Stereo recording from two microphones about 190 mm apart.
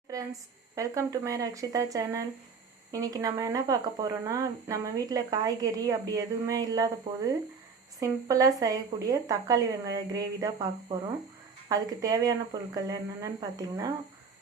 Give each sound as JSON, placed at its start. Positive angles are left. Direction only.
{"t": 0.8, "sound": "speech", "side_deg": -15}